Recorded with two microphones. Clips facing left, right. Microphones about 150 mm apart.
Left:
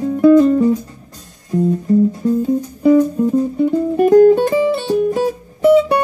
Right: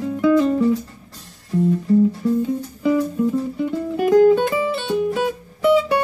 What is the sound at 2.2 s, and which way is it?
Music, 40° left (ahead or behind).